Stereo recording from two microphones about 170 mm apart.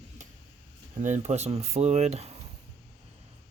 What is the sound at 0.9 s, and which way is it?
Speech, 45° right (ahead or behind).